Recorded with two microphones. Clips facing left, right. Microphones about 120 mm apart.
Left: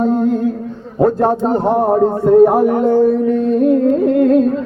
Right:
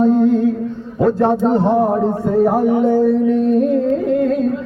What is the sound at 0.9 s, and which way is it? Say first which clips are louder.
A man's voice: left 1 dB; 40° left (ahead or behind).